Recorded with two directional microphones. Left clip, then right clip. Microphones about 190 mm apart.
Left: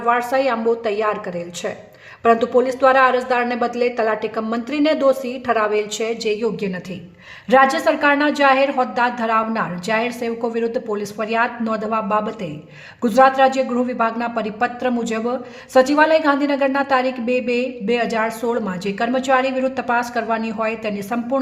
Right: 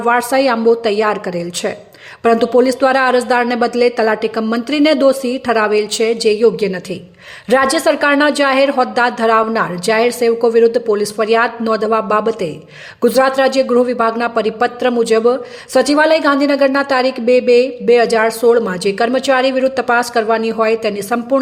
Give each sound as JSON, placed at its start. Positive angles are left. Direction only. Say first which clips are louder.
{"t": 0.0, "sound": "speech", "louder": "right 5 dB", "side_deg": -20}